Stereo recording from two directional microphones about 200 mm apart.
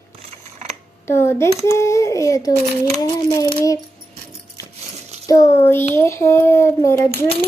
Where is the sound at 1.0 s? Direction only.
15° left (ahead or behind).